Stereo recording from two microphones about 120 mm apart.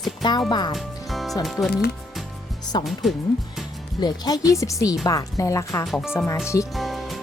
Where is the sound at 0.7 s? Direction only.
Centre (ahead or behind).